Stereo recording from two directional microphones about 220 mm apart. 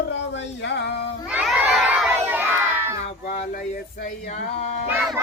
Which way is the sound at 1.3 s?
5° right (ahead or behind).